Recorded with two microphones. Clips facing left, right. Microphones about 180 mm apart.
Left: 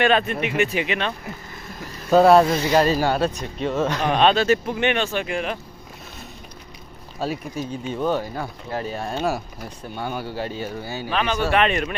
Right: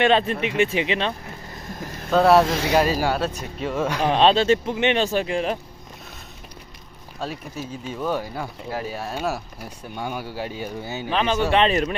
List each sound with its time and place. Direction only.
0.0 s speech: 25° right (ahead or behind)
2.0 s speech: centre (ahead or behind)
4.1 s speech: 30° right (ahead or behind)
5.0 s speech: 35° right (ahead or behind)
7.2 s speech: centre (ahead or behind); by 11.9 s 30° right (ahead or behind)